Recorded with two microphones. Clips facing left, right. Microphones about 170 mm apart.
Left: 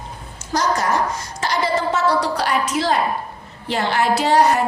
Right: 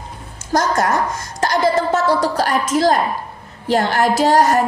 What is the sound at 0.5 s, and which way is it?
A woman's voice, 50° right (ahead or behind).